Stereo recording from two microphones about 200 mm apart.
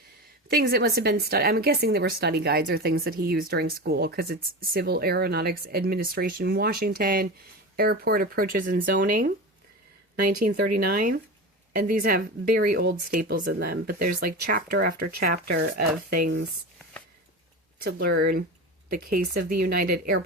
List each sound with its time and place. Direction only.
0.5 s speech: 50° right (ahead or behind)
10.4 s speech: 45° right (ahead or behind)
18.2 s speech: 45° right (ahead or behind)